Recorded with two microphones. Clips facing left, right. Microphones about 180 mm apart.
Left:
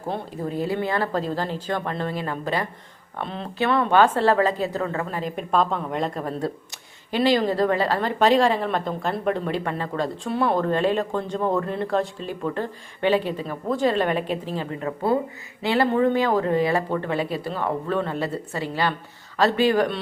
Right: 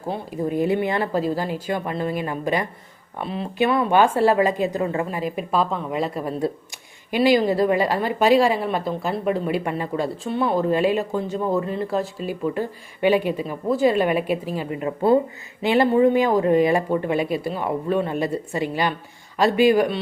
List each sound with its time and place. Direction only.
0.1 s speech: 10° right (ahead or behind)
10.0 s speech: centre (ahead or behind)